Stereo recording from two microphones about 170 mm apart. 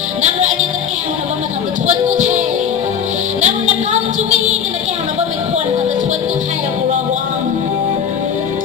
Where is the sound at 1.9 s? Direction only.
45° right (ahead or behind).